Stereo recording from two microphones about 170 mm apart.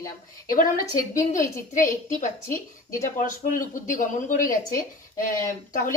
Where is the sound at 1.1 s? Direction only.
50° left (ahead or behind).